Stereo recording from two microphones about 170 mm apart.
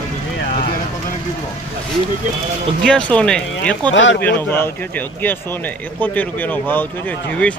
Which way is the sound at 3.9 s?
90° left.